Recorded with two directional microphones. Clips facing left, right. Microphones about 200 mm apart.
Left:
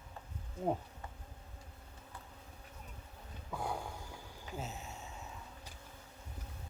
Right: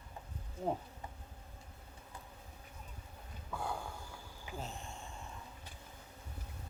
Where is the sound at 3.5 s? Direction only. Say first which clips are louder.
Left 1 dB; 15° left (ahead or behind).